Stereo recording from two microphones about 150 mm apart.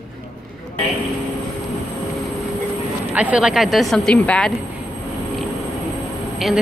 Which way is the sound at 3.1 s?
10° right (ahead or behind).